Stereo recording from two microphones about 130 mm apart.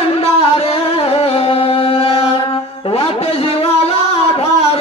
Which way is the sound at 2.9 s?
50° left (ahead or behind).